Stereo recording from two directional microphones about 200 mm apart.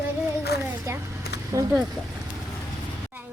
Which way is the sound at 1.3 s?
55° left (ahead or behind).